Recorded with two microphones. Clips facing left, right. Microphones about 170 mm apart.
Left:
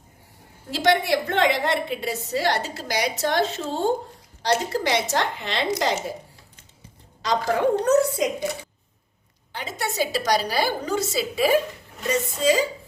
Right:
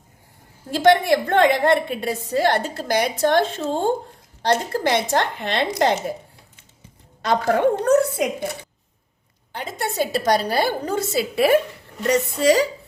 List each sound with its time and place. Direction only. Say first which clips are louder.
0.7 s a woman's voice: right 5 dB; 50° right (ahead or behind)
7.2 s a woman's voice: right 3 dB; 55° right (ahead or behind)
9.5 s a woman's voice: right 2 dB; 55° right (ahead or behind); by 12.6 s 70° right (ahead or behind)